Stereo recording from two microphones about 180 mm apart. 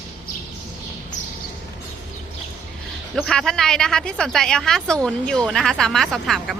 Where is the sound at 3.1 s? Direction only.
Centre (ahead or behind).